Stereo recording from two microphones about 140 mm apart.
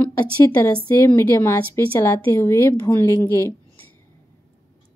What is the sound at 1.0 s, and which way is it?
Speech, 20° left (ahead or behind).